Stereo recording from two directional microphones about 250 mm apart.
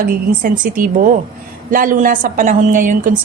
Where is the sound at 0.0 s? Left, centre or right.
Right.